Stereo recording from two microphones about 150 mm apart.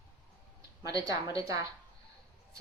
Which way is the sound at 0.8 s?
25° right (ahead or behind).